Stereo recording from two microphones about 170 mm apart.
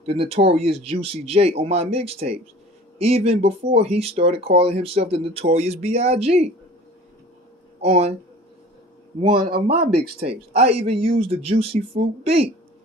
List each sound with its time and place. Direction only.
0.0 s speech: 35° right (ahead or behind)
7.8 s speech: 35° right (ahead or behind)
9.2 s a man's voice: 30° right (ahead or behind)